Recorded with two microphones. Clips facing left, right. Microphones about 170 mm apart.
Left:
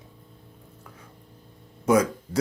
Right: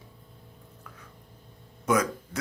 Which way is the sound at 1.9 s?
30° left (ahead or behind).